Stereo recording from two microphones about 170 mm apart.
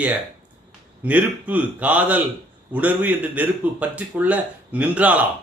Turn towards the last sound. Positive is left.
turn(degrees=-10)  # may be behind; listen again after turning